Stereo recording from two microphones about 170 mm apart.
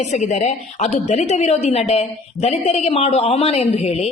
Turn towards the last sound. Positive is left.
turn(degrees=35)  # may be behind; listen again after turning